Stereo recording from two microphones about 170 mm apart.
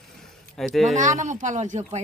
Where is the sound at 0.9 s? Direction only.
45° right (ahead or behind).